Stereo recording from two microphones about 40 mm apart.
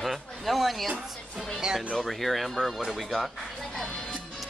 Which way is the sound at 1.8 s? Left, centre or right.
Centre.